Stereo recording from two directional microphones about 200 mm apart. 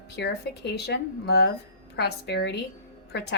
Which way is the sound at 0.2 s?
55° left (ahead or behind).